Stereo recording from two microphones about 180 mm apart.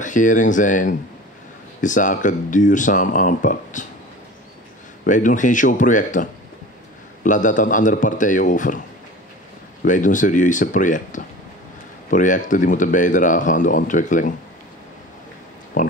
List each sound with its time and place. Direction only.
0.0 s speech: 45° left (ahead or behind)
5.0 s speech: 45° left (ahead or behind)
7.2 s speech: 45° left (ahead or behind)
9.8 s speech: 45° left (ahead or behind)
15.8 s speech: 45° left (ahead or behind)